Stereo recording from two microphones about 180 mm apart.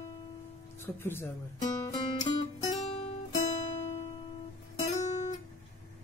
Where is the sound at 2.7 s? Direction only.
35° left (ahead or behind).